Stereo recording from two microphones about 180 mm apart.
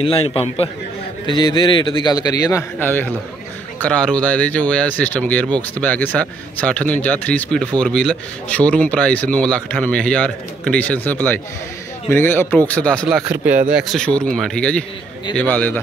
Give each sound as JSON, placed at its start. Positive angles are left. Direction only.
{"t": 0.0, "sound": "a man's voice", "side_deg": 30}
{"t": 2.8, "sound": "speech", "side_deg": 10}